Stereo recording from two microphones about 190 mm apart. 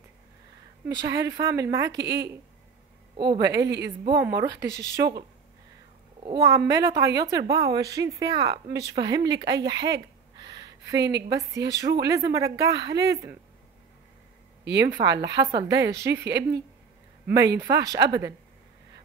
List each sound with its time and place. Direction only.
1.0 s a woman's voice: 20° right (ahead or behind)
1.9 s a woman's voice: 60° right (ahead or behind)
3.3 s a woman's voice: 20° right (ahead or behind)
6.2 s a woman's voice: 20° right (ahead or behind)
10.3 s a sound: 20° right (ahead or behind)
11.2 s a woman's voice: 20° right (ahead or behind)
14.6 s speech: 65° right (ahead or behind)
14.9 s a woman's voice: 20° right (ahead or behind)
16.3 s a woman's voice: 65° right (ahead or behind)
17.6 s a woman's voice: 20° right (ahead or behind)